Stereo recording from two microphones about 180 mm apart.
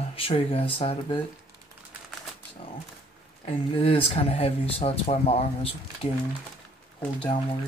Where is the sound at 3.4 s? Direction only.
30° left (ahead or behind).